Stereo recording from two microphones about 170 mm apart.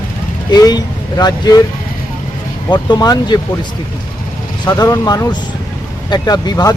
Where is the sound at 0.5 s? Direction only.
20° left (ahead or behind).